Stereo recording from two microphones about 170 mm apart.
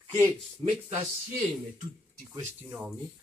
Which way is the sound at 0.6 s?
35° right (ahead or behind).